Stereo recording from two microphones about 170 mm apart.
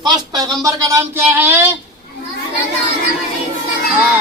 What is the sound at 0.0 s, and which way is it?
Speech, 25° right (ahead or behind).